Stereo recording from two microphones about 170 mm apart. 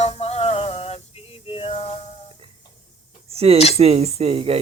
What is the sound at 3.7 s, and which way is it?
Speech, 35° right (ahead or behind).